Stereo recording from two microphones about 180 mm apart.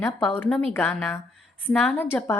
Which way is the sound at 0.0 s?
5° left (ahead or behind).